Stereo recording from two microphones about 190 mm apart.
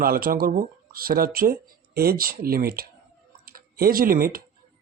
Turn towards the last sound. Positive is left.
turn(degrees=-50)  # may be behind; listen again after turning